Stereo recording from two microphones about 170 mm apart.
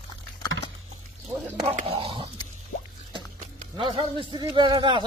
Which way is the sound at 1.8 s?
35° right (ahead or behind).